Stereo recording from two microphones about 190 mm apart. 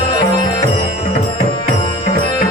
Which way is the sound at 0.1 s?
25° left (ahead or behind).